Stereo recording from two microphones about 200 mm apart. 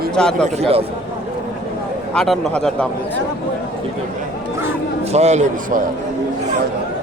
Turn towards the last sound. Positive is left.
turn(degrees=-35)  # may be behind; listen again after turning